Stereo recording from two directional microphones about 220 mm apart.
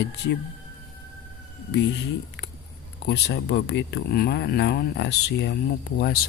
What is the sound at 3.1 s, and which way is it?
Speech, 50° left (ahead or behind).